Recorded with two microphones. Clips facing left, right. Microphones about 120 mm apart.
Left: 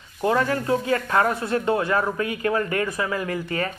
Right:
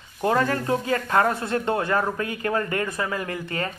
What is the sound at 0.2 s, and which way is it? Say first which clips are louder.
Speech: even; 35° right (ahead or behind).